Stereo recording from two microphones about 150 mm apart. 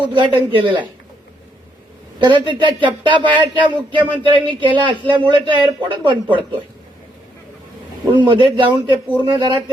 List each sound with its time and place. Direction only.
0.0 s speech: 35° right (ahead or behind)
2.1 s speech: 30° right (ahead or behind)
8.0 s speech: 30° right (ahead or behind)